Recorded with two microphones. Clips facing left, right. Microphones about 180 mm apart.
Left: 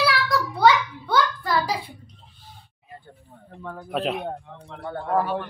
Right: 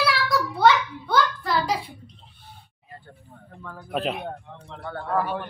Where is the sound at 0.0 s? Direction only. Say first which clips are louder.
Left 1 dB; centre (ahead or behind).